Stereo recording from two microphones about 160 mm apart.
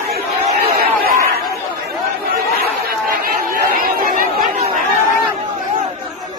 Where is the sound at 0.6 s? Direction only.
65° right (ahead or behind).